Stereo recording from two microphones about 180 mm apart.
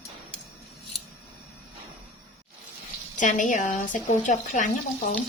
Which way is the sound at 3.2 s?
45° left (ahead or behind).